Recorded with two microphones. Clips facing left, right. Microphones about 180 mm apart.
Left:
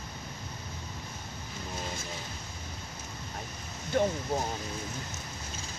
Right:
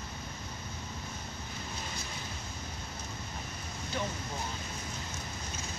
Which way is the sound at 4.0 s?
50° left (ahead or behind).